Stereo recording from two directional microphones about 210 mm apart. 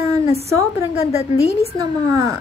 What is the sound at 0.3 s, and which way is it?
Speech, 15° right (ahead or behind).